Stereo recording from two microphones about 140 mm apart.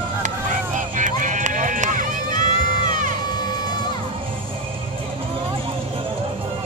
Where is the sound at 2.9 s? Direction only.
70° right (ahead or behind).